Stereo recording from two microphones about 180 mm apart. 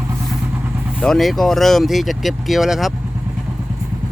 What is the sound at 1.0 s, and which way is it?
Speech, centre (ahead or behind).